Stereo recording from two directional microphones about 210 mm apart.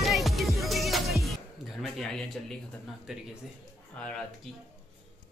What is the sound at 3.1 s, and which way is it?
Speech, 5° right (ahead or behind).